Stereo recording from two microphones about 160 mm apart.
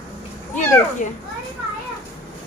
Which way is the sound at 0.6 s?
50° left (ahead or behind).